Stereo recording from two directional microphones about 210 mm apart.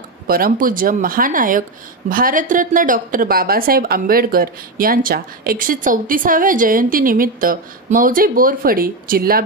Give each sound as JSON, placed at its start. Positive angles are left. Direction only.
{"t": 0.3, "sound": "a woman's voice", "side_deg": -45}